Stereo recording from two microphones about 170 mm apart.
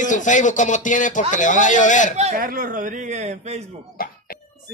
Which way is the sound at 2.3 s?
55° right (ahead or behind).